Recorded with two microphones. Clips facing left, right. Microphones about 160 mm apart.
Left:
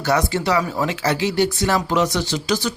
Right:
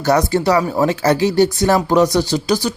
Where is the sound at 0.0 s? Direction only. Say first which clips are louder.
Right 5 dB; 40° right (ahead or behind).